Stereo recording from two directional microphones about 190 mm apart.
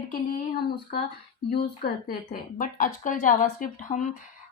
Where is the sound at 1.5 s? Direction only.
50° left (ahead or behind).